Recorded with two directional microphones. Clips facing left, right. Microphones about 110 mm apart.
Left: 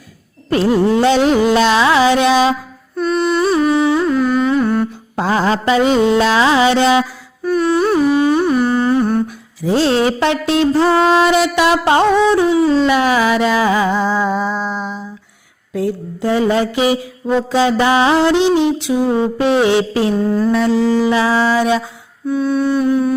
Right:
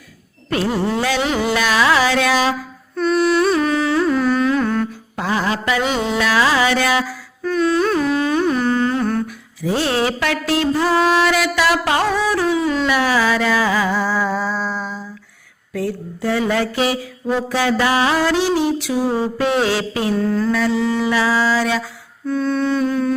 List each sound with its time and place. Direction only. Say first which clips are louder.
1.5 s mantra: left 4 dB; 25° left (ahead or behind)
2.9 s music: even; centre (ahead or behind)
5.1 s music: left 5 dB; 30° left (ahead or behind)
6.1 s carnatic music: left 4 dB; 25° left (ahead or behind)
7.5 s humming: left 3 dB; 10° left (ahead or behind)
9.2 s mantra: left 3 dB; 30° left (ahead or behind)
20.1 s mantra: left 2 dB; 20° left (ahead or behind)
20.7 s a sound: left 4 dB; 35° left (ahead or behind)
21.1 s mantra: left 3 dB; 20° left (ahead or behind)
22.3 s music: left 3 dB; 10° left (ahead or behind)